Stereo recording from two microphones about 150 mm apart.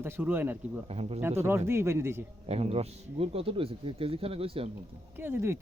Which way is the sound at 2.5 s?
45° right (ahead or behind).